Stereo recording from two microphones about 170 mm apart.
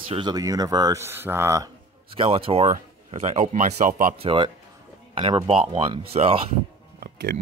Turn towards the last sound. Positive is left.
turn(degrees=-65)  # may be behind; listen again after turning